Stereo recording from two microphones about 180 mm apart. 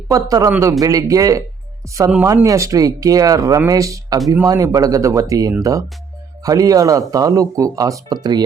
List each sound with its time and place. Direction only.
0.1 s speech: 20° right (ahead or behind)